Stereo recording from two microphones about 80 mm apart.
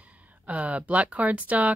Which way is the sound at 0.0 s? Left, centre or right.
Centre.